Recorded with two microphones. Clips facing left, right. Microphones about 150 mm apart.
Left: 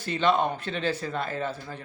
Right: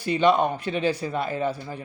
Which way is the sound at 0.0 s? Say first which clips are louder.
Right 4 dB; 15° right (ahead or behind).